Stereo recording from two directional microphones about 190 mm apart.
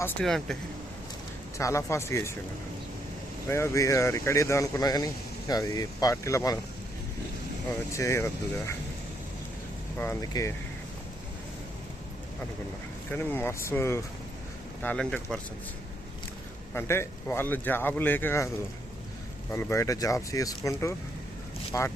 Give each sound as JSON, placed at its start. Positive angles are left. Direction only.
{"t": 0.0, "sound": "speech", "side_deg": 5}
{"t": 1.5, "sound": "speech", "side_deg": 15}
{"t": 3.5, "sound": "speech", "side_deg": 15}
{"t": 7.9, "sound": "speech", "side_deg": 15}
{"t": 10.0, "sound": "speech", "side_deg": 15}
{"t": 13.1, "sound": "speech", "side_deg": 10}
{"t": 16.7, "sound": "speech", "side_deg": 10}
{"t": 19.5, "sound": "speech", "side_deg": 15}